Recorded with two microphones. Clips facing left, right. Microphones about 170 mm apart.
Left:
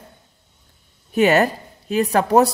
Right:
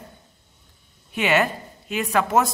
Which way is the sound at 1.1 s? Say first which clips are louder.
Left 6 dB; 40° left (ahead or behind).